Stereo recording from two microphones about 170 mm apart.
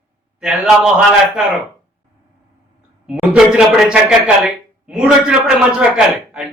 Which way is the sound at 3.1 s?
5° right (ahead or behind).